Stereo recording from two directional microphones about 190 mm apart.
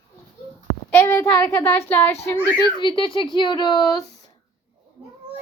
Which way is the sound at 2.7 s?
25° left (ahead or behind).